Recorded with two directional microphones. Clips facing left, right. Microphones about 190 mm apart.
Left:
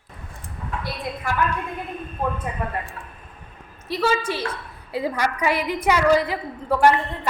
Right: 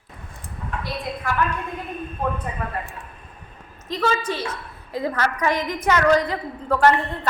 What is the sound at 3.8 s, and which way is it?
A woman's voice, 10° left (ahead or behind).